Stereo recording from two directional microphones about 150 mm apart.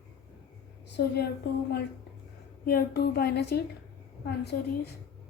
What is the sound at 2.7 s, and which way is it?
Speech, 90° left.